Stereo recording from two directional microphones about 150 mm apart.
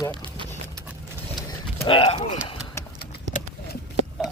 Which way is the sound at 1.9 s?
35° left (ahead or behind).